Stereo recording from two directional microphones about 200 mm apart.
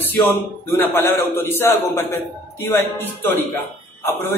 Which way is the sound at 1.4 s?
10° left (ahead or behind).